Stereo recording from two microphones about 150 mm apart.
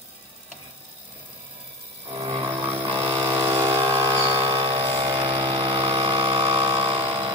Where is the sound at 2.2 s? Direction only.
40° right (ahead or behind).